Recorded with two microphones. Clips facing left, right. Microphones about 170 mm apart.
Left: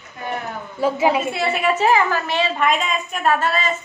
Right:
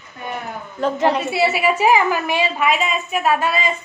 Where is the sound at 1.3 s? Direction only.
5° right (ahead or behind).